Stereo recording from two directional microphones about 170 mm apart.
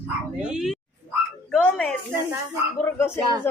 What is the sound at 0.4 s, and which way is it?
Speech, 5° right (ahead or behind).